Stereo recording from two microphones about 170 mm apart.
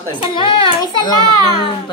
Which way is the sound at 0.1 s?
30° left (ahead or behind).